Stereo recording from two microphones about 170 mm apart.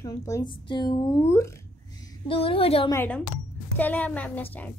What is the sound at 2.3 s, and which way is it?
Speech, 35° left (ahead or behind).